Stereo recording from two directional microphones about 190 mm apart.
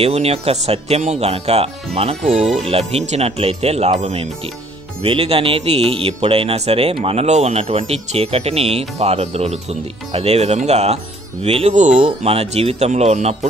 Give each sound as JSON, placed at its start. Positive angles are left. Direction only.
{"t": 0.0, "sound": "speech", "side_deg": -35}